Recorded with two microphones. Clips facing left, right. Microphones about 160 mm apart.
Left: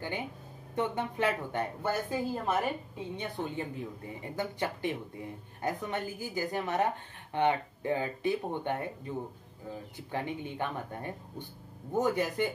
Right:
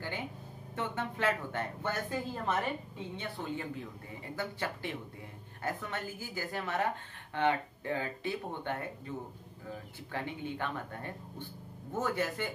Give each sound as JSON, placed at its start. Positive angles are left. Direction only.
{"t": 0.7, "sound": "a woman's voice", "side_deg": 15}
{"t": 3.2, "sound": "a woman's voice", "side_deg": 20}
{"t": 10.1, "sound": "a woman's voice", "side_deg": 15}